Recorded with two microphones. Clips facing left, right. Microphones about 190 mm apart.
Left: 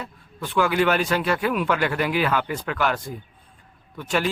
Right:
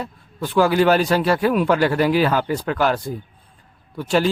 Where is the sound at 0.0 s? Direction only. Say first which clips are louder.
Right 6 dB; 35° right (ahead or behind).